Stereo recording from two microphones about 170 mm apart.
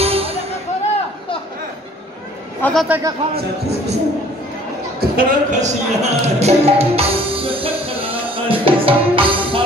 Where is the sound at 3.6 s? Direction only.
40° right (ahead or behind).